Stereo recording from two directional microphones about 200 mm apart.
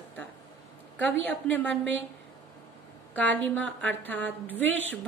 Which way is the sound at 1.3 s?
10° left (ahead or behind).